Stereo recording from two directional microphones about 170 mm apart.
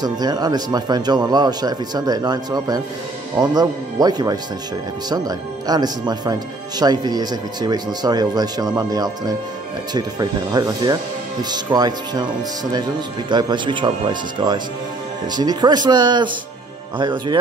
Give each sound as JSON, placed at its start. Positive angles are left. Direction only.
{"t": 0.0, "sound": "speech", "side_deg": -25}